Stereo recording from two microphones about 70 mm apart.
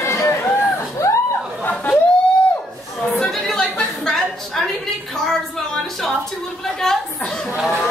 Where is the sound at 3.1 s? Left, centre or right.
Centre.